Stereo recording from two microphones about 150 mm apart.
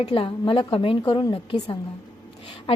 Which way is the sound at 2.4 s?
30° left (ahead or behind).